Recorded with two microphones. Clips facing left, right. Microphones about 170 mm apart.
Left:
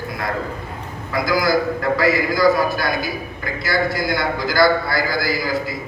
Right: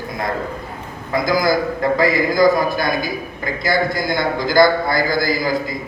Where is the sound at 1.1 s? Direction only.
20° right (ahead or behind).